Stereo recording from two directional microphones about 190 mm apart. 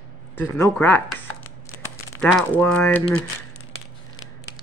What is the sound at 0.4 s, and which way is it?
Speech, 10° left (ahead or behind).